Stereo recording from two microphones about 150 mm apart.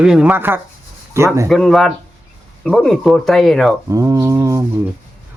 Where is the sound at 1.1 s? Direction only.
20° right (ahead or behind).